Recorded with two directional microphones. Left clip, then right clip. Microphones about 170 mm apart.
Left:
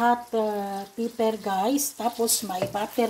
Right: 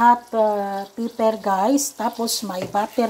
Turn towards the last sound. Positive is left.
turn(degrees=-15)  # may be behind; listen again after turning